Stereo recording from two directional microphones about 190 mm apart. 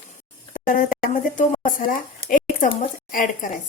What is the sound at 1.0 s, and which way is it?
A woman's voice, 50° left (ahead or behind).